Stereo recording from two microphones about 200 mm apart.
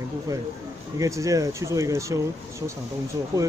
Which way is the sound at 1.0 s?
15° right (ahead or behind).